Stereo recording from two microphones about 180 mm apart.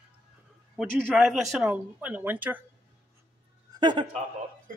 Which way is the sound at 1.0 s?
Centre (ahead or behind).